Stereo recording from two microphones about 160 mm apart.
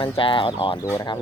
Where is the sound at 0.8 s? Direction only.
20° left (ahead or behind).